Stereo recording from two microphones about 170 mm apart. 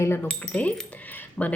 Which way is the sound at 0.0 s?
10° left (ahead or behind).